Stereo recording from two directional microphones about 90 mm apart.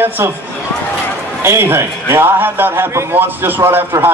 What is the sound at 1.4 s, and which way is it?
A man's voice, 25° right (ahead or behind).